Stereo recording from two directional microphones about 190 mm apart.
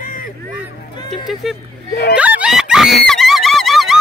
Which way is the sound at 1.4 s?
Centre (ahead or behind).